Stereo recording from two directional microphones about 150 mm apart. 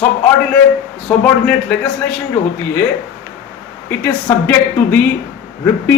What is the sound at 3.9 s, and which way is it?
A man's voice, 15° left (ahead or behind).